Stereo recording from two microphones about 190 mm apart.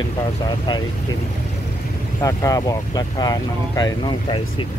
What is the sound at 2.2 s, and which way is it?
Speech, 15° left (ahead or behind).